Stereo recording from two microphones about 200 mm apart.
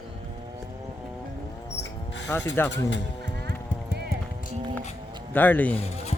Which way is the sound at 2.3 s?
10° left (ahead or behind).